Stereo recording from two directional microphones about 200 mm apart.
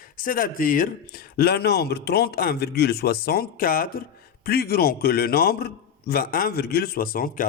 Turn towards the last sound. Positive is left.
turn(degrees=45)  # may be behind; listen again after turning